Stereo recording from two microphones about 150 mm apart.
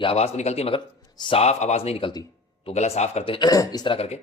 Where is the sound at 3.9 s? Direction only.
45° left (ahead or behind).